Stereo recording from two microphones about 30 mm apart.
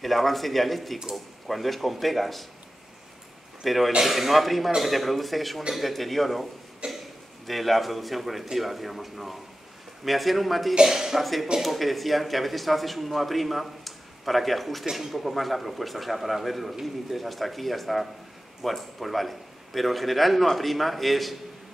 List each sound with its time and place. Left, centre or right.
0.0 s speech: centre
3.6 s speech: centre
4.6 s speech: centre
4.9 s speech: centre
6.8 s cough: right
7.4 s speech: centre
10.9 s speech: centre
11.1 s speech: centre
14.9 s speech: centre
15.1 s speech: centre